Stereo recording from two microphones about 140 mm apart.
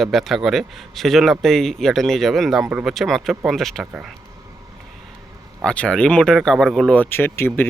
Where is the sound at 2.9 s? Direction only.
Centre (ahead or behind).